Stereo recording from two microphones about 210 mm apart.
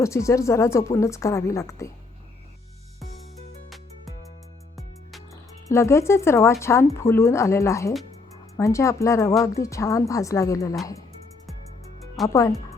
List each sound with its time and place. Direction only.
0.0 s speech: 15° left (ahead or behind)
5.6 s speech: 15° left (ahead or behind)
12.3 s speech: 15° left (ahead or behind)